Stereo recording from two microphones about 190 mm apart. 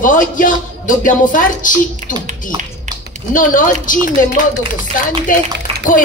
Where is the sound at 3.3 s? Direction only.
45° left (ahead or behind).